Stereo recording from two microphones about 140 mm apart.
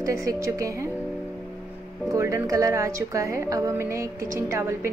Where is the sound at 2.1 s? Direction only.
20° right (ahead or behind).